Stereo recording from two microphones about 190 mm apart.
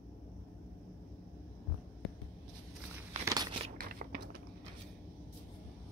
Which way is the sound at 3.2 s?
20° right (ahead or behind).